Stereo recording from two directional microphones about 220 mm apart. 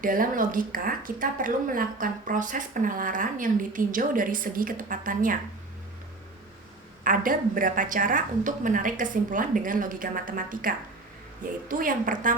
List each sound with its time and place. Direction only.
0.0 s speech: 40° right (ahead or behind)
7.0 s speech: 40° right (ahead or behind)